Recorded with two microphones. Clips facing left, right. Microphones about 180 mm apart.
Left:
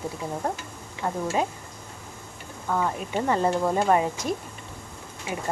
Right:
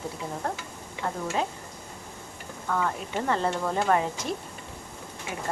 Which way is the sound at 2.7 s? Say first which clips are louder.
Left 2 dB; 15° left (ahead or behind).